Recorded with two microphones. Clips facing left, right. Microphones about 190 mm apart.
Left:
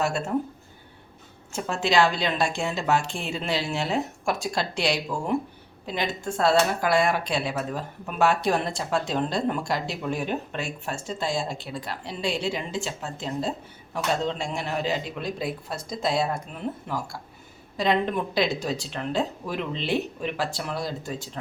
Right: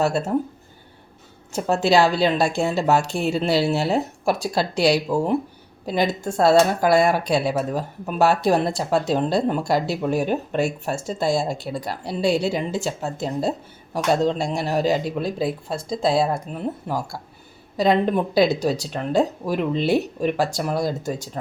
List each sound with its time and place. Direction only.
1.5 s speech: 40° right (ahead or behind)